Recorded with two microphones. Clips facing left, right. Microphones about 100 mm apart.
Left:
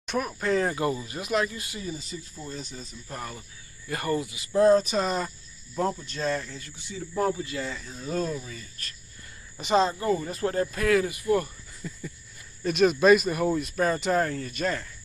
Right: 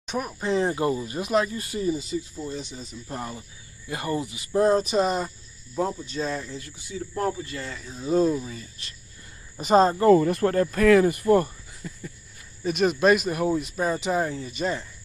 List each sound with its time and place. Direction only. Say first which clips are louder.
0.0 s a sound: left 1 dB; 15° right (ahead or behind)
0.4 s speech: right 2 dB; 25° right (ahead or behind)
2.7 s speech: right 3 dB; 20° right (ahead or behind)
5.0 s speech: right 3 dB; 15° right (ahead or behind)
7.5 s speech: left 2 dB; centre (ahead or behind)
7.8 s speech: right 12 dB; 15° right (ahead or behind)
9.6 s speech: right 5 dB; 45° right (ahead or behind)
10.1 s speech: right 7 dB; 65° right (ahead or behind); by 11.5 s 40° right (ahead or behind)
11.8 s a sound: even; 5° right (ahead or behind)
12.6 s speech: left 1 dB; 5° right (ahead or behind)